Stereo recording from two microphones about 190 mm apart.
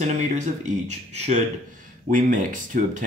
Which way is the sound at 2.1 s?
45° right (ahead or behind).